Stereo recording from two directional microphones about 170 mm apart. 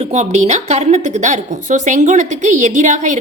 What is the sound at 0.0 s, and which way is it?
A woman's voice, 40° right (ahead or behind).